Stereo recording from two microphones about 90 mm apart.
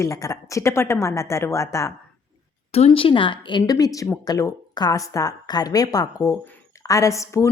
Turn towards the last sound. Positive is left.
turn(degrees=35)  # may be behind; listen again after turning